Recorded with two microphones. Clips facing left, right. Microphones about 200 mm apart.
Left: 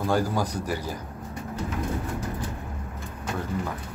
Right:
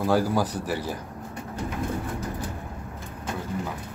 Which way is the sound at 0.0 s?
5° right (ahead or behind).